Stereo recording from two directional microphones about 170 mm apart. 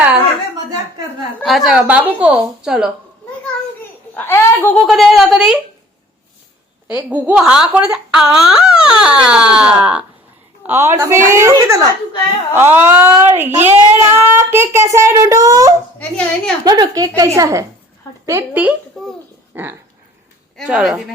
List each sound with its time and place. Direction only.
1.4 s speech: centre (ahead or behind)
4.1 s a child's voice: 10° left (ahead or behind)
4.8 s speech: centre (ahead or behind)
7.1 s speech: 5° right (ahead or behind)
16.0 s a child's voice: 5° left (ahead or behind)
16.6 s a child's voice: 20° right (ahead or behind); by 21.0 s 5° right (ahead or behind)